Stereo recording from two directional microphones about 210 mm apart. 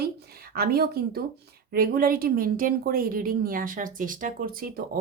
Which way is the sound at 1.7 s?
45° right (ahead or behind).